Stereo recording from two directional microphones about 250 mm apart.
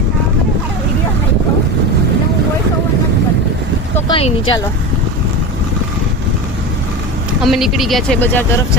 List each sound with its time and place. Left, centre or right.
3.9 s speech: left
7.4 s speech: centre